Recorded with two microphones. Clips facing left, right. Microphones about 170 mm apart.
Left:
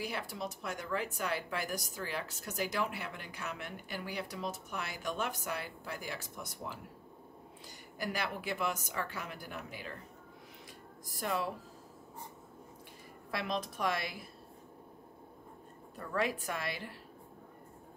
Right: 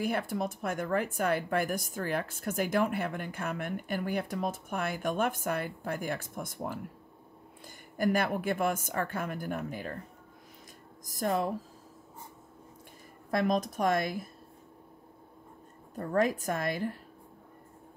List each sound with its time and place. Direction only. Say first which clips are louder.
0.0 s speech: right 8 dB; 50° right (ahead or behind)
8.0 s speech: right 9 dB; 50° right (ahead or behind)
11.1 s speech: right 6 dB; 45° right (ahead or behind)
13.3 s speech: right 8 dB; 45° right (ahead or behind)
16.0 s speech: right 7 dB; 45° right (ahead or behind)